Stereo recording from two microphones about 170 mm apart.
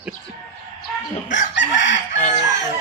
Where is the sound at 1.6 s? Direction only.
90° left.